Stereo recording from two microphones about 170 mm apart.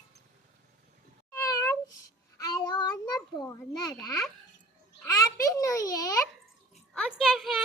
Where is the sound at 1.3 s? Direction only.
20° left (ahead or behind).